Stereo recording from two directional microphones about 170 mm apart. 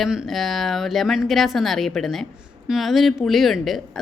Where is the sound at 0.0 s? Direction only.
Centre (ahead or behind).